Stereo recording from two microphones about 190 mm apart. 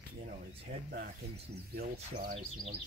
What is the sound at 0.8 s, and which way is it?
Speech, 55° right (ahead or behind).